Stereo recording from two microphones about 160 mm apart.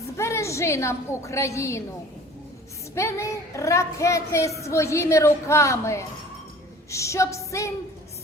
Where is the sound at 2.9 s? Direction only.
15° left (ahead or behind).